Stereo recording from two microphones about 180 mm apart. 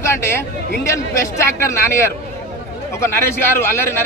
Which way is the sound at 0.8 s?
15° left (ahead or behind).